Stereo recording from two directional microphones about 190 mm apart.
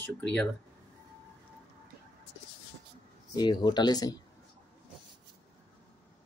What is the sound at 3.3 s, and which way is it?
Speech, 20° left (ahead or behind).